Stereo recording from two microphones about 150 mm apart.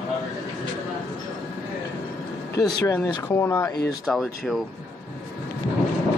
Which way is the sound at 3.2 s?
15° left (ahead or behind).